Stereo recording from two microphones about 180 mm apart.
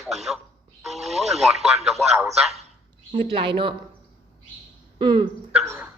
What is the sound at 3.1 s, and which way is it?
Speech, 30° right (ahead or behind).